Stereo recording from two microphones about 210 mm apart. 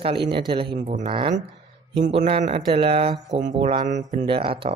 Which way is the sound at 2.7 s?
30° right (ahead or behind).